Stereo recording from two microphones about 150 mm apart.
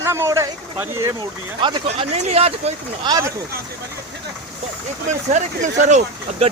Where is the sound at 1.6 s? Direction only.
35° right (ahead or behind).